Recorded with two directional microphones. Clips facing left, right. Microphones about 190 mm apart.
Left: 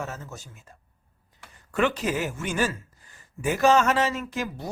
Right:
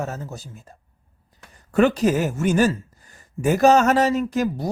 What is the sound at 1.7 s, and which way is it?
Speech, 40° right (ahead or behind).